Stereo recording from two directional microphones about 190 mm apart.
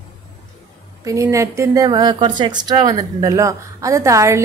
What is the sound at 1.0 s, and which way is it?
A woman's voice, 15° right (ahead or behind).